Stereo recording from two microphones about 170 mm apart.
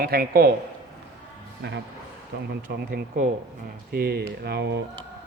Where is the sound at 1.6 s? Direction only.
80° right.